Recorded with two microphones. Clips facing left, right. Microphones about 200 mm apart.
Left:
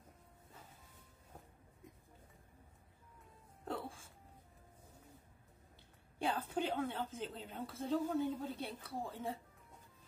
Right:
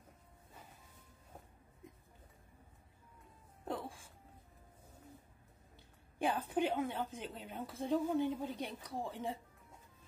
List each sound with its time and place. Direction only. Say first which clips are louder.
6.1 s a woman's voice: right 3 dB; 15° right (ahead or behind)